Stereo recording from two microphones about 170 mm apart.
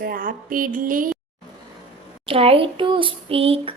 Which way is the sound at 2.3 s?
35° right (ahead or behind).